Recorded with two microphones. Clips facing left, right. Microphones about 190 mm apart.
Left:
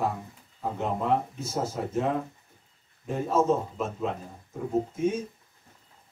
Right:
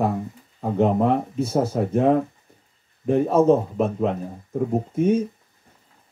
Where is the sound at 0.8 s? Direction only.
60° right (ahead or behind).